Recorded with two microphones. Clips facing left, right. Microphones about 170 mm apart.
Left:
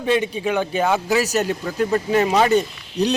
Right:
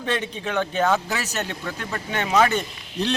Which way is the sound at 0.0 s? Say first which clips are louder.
Left 7 dB; 10° left (ahead or behind).